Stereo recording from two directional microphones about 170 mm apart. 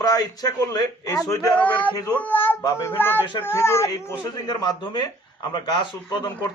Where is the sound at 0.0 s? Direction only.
20° left (ahead or behind).